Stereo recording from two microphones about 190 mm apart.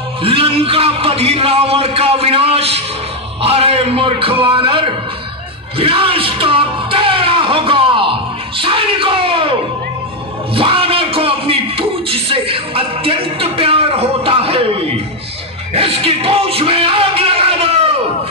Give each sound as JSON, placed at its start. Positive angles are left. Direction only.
{"t": 0.2, "sound": "a man's voice", "side_deg": -30}
{"t": 10.5, "sound": "a sound", "side_deg": -30}
{"t": 15.7, "sound": "music", "side_deg": -30}